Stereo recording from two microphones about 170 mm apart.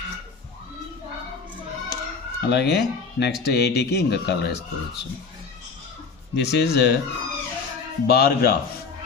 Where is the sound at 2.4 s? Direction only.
90° left.